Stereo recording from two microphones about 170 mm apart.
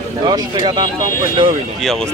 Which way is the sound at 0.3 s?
25° right (ahead or behind).